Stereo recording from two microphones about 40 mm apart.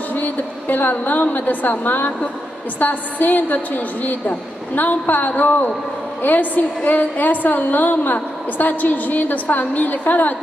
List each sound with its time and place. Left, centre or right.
0.1 s a woman's voice: left